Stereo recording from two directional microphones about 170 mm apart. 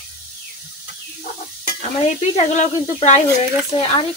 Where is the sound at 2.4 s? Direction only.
40° left (ahead or behind).